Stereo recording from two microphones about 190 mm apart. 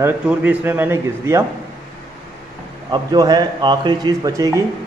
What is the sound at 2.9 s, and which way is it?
A man's voice, 20° right (ahead or behind).